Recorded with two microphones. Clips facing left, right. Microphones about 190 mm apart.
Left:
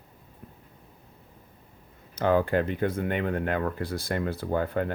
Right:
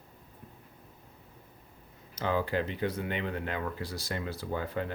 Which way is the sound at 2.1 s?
55° left (ahead or behind).